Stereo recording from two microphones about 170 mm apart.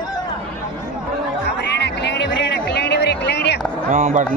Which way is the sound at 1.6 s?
90° left.